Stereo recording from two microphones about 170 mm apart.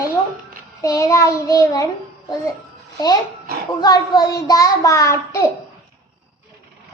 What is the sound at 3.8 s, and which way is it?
A child's voice, 20° left (ahead or behind).